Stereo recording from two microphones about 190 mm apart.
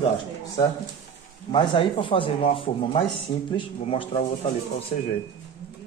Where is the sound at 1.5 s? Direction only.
25° left (ahead or behind).